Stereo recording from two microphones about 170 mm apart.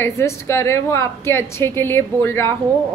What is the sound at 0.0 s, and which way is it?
A woman's voice, 15° left (ahead or behind).